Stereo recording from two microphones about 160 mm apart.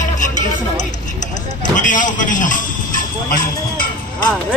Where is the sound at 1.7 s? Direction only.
55° left (ahead or behind).